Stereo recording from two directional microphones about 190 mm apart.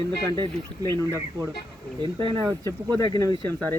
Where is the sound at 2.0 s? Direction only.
20° right (ahead or behind).